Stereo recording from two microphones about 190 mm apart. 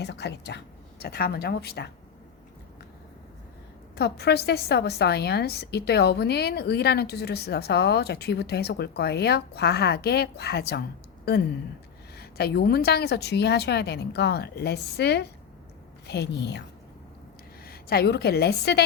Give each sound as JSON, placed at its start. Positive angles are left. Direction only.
{"t": 0.0, "sound": "a woman's voice", "side_deg": 65}
{"t": 3.9, "sound": "a woman's voice", "side_deg": 60}
{"t": 12.1, "sound": "a woman's voice", "side_deg": 55}